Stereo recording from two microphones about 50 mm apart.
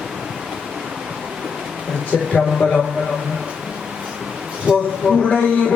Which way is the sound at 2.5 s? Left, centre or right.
Centre.